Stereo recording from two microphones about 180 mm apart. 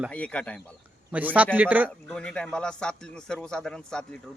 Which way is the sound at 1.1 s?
10° right (ahead or behind).